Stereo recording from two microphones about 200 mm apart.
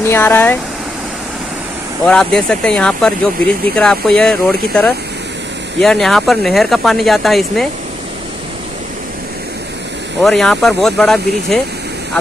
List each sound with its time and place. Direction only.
0.0 s speech: 10° left (ahead or behind)
2.0 s speech: 5° left (ahead or behind)
10.2 s speech: centre (ahead or behind)